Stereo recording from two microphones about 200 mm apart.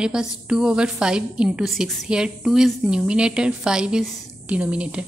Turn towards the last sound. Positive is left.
turn(degrees=-5)  # may be behind; listen again after turning